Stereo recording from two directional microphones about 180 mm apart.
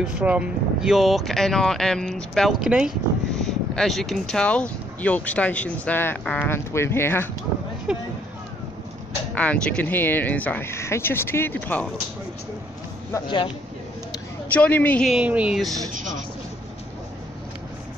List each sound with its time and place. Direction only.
0.0 s speech: 5° right (ahead or behind); by 7.2 s 15° left (ahead or behind)
7.9 s speech: 5° right (ahead or behind)
9.3 s speech: 5° left (ahead or behind)
13.1 s speech: 25° left (ahead or behind)
14.5 s speech: 10° left (ahead or behind)